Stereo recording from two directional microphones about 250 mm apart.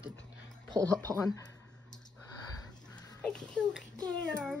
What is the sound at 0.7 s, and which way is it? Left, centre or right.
Speech, centre.